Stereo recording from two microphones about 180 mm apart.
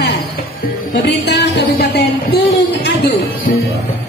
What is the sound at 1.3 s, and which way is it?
Music, 65° left (ahead or behind).